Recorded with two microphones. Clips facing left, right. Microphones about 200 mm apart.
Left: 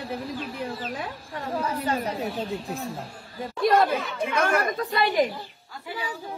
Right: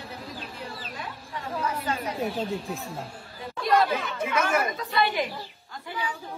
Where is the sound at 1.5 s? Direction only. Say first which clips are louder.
Left 3 dB; 30° left (ahead or behind).